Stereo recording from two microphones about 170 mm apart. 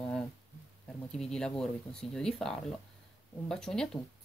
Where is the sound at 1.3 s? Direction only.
5° left (ahead or behind).